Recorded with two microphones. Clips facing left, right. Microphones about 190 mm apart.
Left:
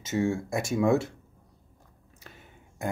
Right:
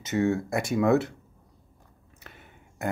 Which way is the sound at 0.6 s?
60° right (ahead or behind).